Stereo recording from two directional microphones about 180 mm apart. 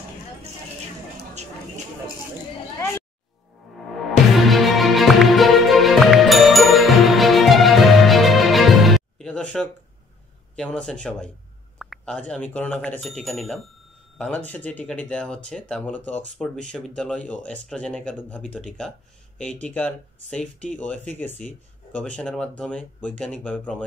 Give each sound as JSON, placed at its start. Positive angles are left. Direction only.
{"t": 4.4, "sound": "music", "side_deg": 0}
{"t": 10.5, "sound": "speech", "side_deg": 5}